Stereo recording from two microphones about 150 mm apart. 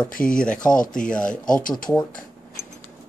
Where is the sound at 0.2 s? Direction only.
5° left (ahead or behind).